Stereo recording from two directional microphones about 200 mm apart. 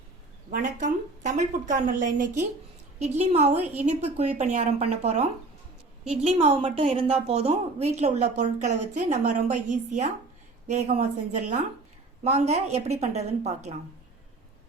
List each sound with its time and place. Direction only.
0.5 s a woman's voice: 40° right (ahead or behind)